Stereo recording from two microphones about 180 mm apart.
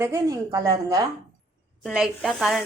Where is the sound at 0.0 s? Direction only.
15° right (ahead or behind).